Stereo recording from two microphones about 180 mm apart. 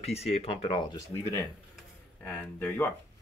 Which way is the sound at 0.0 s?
35° left (ahead or behind).